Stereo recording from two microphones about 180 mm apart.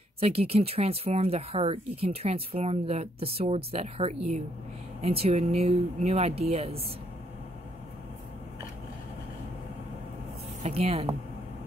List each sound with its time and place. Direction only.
0.2 s speech: 35° right (ahead or behind)
10.6 s speech: 35° right (ahead or behind)